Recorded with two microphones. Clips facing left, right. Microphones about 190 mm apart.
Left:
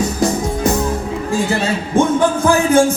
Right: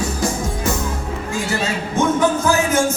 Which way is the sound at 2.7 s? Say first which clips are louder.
Left 6 dB; 30° left (ahead or behind).